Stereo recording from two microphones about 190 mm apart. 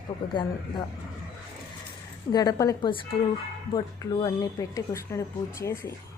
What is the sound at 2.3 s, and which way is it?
Speech, 20° left (ahead or behind).